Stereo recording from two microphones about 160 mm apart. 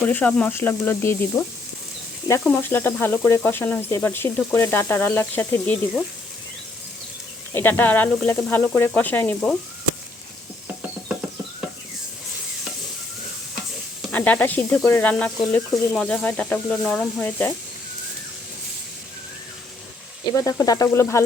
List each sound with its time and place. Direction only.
0.1 s speech: 10° left (ahead or behind)
7.5 s speech: 15° left (ahead or behind)
14.1 s sizzle: 10° left (ahead or behind)
14.8 s speech: 10° left (ahead or behind)
20.2 s sizzle: 20° left (ahead or behind)